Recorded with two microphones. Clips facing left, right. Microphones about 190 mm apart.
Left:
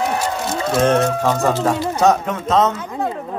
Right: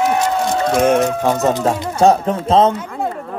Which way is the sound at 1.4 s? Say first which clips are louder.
Right 1 dB; 25° right (ahead or behind).